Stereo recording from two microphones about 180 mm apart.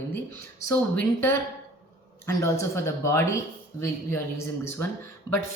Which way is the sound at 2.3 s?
15° left (ahead or behind).